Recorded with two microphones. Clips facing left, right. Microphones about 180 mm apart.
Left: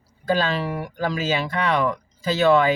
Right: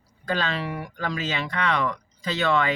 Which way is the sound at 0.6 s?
5° left (ahead or behind).